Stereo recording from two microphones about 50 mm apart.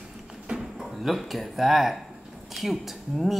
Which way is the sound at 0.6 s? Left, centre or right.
Centre.